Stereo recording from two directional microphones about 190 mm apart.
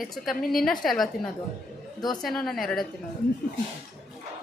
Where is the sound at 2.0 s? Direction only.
20° left (ahead or behind).